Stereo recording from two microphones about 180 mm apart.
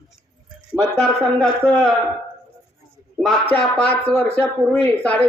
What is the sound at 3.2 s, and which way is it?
Speech, 5° left (ahead or behind).